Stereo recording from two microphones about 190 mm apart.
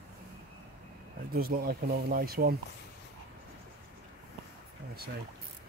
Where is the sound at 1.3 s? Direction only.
50° right (ahead or behind).